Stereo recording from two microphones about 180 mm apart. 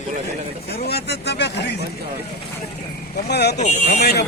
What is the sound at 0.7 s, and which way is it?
Speech, 60° left (ahead or behind).